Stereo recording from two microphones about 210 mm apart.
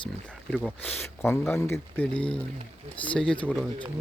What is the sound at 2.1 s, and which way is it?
Speech, 25° left (ahead or behind).